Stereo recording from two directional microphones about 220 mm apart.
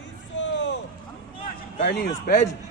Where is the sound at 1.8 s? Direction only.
50° left (ahead or behind).